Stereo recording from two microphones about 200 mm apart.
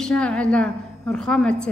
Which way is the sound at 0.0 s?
5° left (ahead or behind).